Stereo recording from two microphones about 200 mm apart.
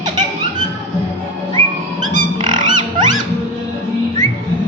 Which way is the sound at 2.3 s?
20° right (ahead or behind).